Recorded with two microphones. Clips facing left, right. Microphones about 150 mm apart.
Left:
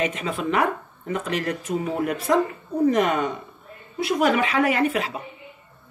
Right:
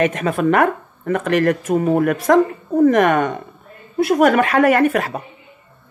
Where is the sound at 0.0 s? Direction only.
55° right (ahead or behind).